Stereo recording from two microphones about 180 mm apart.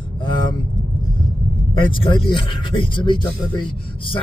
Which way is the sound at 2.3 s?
30° left (ahead or behind).